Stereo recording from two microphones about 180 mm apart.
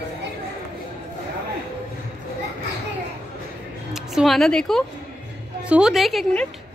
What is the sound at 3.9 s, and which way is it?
Speech, centre (ahead or behind).